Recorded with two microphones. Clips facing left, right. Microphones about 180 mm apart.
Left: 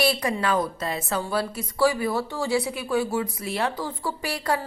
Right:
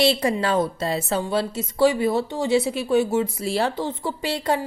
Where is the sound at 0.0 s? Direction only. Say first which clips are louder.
Right 4 dB; 25° right (ahead or behind).